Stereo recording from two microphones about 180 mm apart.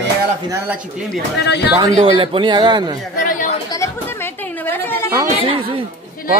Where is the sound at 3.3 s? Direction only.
45° left (ahead or behind).